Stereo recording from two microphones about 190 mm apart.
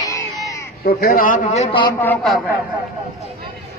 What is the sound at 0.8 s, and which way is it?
A man's voice, 55° left (ahead or behind).